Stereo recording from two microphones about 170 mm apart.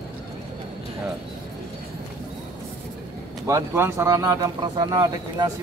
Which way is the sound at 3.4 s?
15° right (ahead or behind).